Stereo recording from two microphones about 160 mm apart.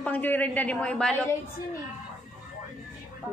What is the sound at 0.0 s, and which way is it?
A man's voice, 10° left (ahead or behind).